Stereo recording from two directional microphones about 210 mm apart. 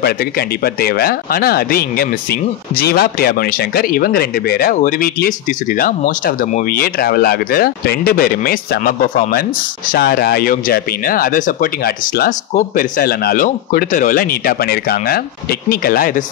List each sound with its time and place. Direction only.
0.0 s speech: 45° left (ahead or behind)